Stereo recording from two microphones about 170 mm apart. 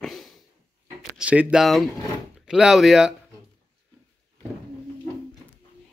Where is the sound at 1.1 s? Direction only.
5° right (ahead or behind).